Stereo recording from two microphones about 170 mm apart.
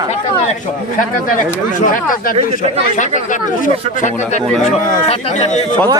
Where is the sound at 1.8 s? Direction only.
55° left (ahead or behind); by 5.6 s 40° left (ahead or behind).